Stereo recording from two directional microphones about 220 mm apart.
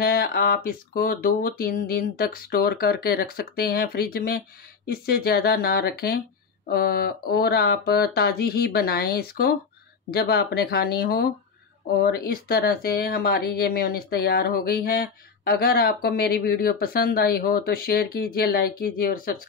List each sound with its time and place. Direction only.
0.0 s speech: 45° left (ahead or behind)